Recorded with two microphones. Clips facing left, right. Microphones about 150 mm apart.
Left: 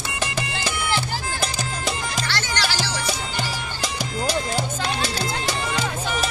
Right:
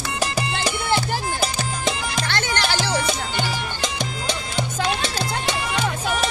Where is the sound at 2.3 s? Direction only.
55° right (ahead or behind).